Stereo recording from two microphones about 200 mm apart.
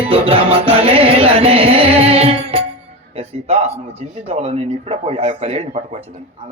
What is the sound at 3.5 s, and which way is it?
Speech, 30° right (ahead or behind).